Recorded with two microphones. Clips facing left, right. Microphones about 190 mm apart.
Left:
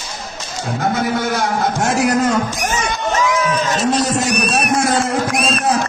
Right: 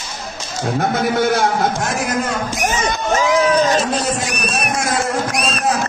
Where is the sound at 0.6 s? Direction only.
60° right (ahead or behind).